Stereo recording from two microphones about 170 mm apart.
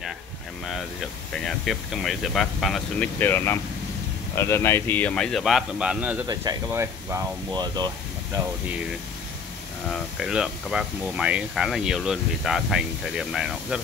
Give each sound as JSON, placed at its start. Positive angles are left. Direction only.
{"t": 1.3, "sound": "speech", "side_deg": 0}
{"t": 3.2, "sound": "speech", "side_deg": 15}
{"t": 6.2, "sound": "speech", "side_deg": -20}
{"t": 9.8, "sound": "speech", "side_deg": -5}